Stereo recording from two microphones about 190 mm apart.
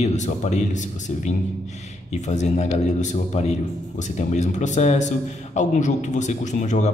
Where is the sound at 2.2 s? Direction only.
35° left (ahead or behind).